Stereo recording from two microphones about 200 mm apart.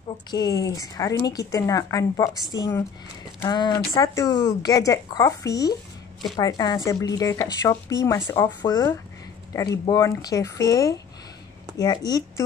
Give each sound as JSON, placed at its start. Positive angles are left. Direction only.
{"t": 0.3, "sound": "a woman's voice", "side_deg": 20}